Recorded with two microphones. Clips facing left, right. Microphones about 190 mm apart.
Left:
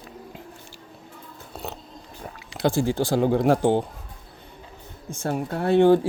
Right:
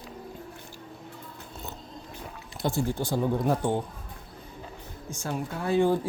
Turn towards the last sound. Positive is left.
turn(degrees=70)  # may be behind; listen again after turning